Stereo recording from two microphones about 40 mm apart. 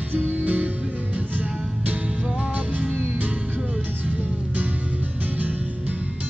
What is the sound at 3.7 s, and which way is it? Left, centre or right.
Music, right.